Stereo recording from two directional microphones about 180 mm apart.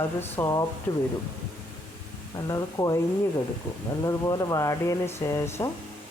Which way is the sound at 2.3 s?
20° left (ahead or behind).